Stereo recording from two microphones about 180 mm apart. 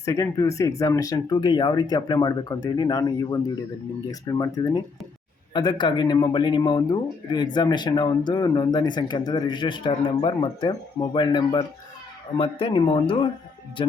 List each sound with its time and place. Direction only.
0.0 s speech: 15° left (ahead or behind)